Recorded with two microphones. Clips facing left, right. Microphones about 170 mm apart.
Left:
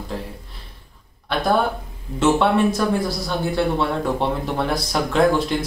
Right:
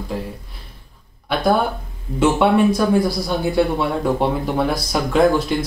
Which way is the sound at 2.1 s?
10° right (ahead or behind).